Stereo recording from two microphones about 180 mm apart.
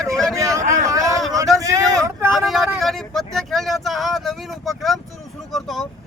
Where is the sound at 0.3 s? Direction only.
20° right (ahead or behind).